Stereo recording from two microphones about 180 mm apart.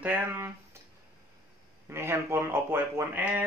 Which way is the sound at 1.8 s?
15° right (ahead or behind).